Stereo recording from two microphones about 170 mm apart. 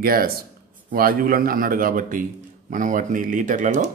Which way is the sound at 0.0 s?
60° right (ahead or behind).